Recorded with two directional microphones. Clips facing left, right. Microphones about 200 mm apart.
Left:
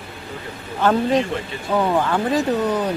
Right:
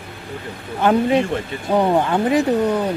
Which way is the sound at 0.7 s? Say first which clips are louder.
Right 2 dB; 15° right (ahead or behind).